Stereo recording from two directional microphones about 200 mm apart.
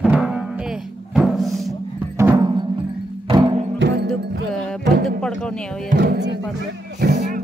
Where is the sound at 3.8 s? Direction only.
60° right (ahead or behind).